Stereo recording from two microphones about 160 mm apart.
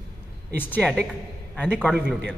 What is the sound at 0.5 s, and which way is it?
Speech, 10° left (ahead or behind).